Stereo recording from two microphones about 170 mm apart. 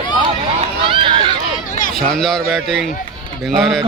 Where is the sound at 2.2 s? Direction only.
Centre (ahead or behind).